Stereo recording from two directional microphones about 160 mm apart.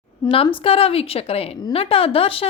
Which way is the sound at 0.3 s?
35° left (ahead or behind).